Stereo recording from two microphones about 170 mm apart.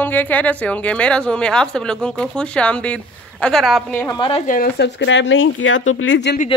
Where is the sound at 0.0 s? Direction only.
10° left (ahead or behind).